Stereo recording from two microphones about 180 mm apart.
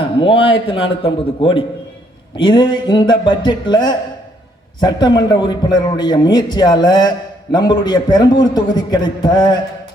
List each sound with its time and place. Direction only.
0.2 s a man's voice: 30° left (ahead or behind)